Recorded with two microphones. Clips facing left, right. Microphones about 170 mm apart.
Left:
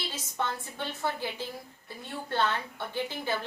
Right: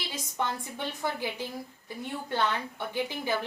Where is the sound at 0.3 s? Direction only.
15° right (ahead or behind).